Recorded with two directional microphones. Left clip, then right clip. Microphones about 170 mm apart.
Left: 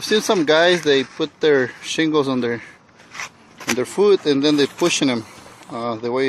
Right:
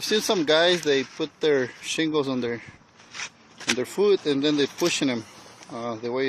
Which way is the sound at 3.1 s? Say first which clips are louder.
Left 4 dB; 25° right (ahead or behind).